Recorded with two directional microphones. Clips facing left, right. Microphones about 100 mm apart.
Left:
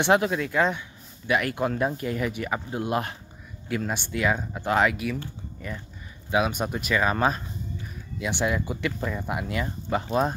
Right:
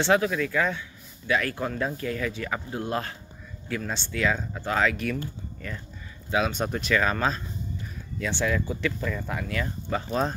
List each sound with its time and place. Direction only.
0.0 s speech: 25° left (ahead or behind)
4.9 s speech: 5° left (ahead or behind)
6.3 s speech: 10° left (ahead or behind)